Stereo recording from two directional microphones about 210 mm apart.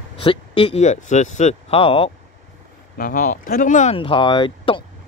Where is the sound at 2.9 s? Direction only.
40° left (ahead or behind).